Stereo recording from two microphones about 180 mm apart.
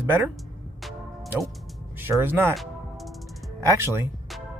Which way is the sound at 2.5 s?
Centre (ahead or behind).